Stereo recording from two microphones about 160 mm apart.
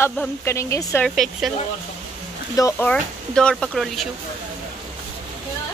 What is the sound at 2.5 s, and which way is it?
Speech, 15° left (ahead or behind).